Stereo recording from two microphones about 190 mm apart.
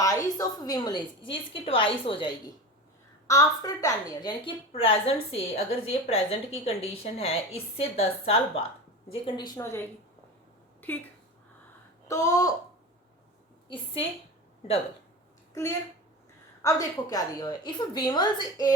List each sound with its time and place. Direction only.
0.0 s a woman's voice: 20° left (ahead or behind)
3.2 s a woman's voice: 15° left (ahead or behind)
9.6 s speech: 15° left (ahead or behind)
10.8 s a sound: 10° left (ahead or behind)
12.0 s speech: 15° left (ahead or behind)
13.7 s a woman's voice: 30° left (ahead or behind)
16.6 s a woman's voice: 20° left (ahead or behind)